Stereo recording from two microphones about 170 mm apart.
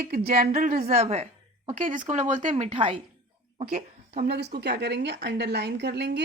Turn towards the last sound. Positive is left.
turn(degrees=-80)